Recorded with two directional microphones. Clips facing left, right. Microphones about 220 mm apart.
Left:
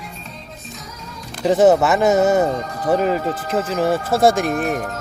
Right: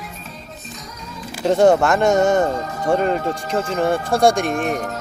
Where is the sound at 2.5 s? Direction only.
Centre (ahead or behind).